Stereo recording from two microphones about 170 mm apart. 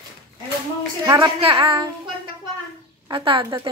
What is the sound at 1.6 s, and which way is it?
Speech, 30° right (ahead or behind).